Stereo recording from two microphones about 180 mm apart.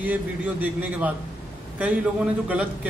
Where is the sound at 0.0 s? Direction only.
10° right (ahead or behind).